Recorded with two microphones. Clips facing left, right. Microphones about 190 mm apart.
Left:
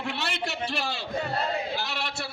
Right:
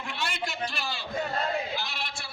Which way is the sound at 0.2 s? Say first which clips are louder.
Left 1 dB; 70° left (ahead or behind).